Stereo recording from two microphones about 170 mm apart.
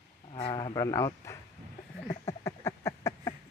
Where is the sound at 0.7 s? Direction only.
20° left (ahead or behind).